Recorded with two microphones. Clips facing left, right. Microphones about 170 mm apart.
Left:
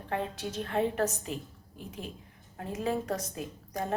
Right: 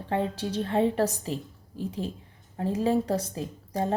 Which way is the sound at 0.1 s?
30° right (ahead or behind).